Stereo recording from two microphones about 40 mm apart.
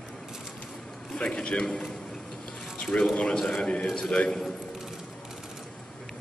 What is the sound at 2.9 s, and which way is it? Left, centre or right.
Speech, left.